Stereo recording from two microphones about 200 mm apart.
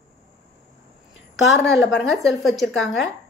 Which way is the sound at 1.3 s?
60° left (ahead or behind).